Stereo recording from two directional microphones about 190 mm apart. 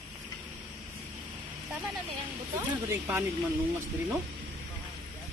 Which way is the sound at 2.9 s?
15° right (ahead or behind).